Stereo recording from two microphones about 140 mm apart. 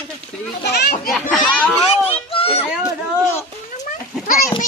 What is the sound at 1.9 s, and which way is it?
Children playing, 40° left (ahead or behind).